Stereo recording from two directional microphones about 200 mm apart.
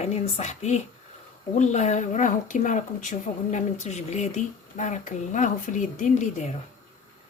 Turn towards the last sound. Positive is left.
turn(degrees=35)  # may be behind; listen again after turning